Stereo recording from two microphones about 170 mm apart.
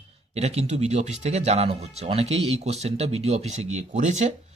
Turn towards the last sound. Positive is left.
turn(degrees=-45)  # may be behind; listen again after turning